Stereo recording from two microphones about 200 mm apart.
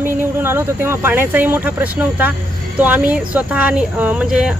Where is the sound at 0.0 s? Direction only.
10° right (ahead or behind).